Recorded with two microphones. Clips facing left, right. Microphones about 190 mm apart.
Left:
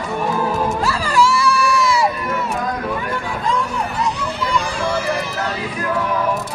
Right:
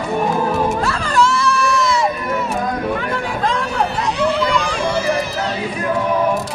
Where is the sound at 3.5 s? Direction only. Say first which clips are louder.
Even; 90° right.